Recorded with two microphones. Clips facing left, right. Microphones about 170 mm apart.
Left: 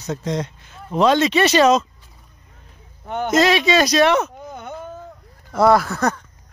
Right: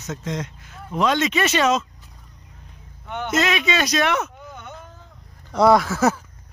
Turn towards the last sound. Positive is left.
turn(degrees=-5)  # may be behind; listen again after turning